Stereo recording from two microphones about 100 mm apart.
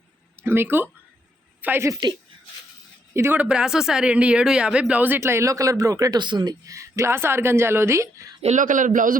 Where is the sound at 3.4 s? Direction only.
10° right (ahead or behind); by 8.4 s 30° right (ahead or behind).